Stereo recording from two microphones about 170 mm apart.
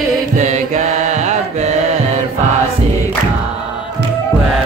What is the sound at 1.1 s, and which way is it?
Mantra, 45° right (ahead or behind).